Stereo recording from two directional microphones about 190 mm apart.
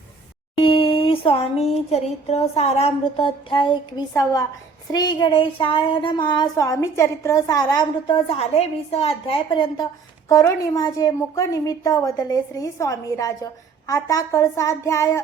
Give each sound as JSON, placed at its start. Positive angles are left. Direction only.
{"t": 0.5, "sound": "speech", "side_deg": 30}